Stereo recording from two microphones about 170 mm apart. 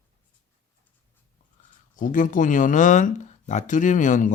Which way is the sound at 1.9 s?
50° left (ahead or behind).